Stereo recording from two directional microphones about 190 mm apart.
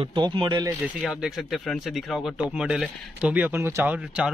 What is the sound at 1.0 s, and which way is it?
Speech, centre (ahead or behind).